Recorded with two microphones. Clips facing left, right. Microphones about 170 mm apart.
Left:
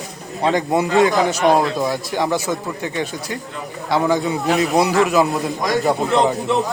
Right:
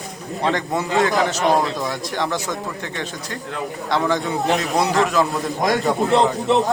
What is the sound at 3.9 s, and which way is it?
A man's voice, 10° left (ahead or behind).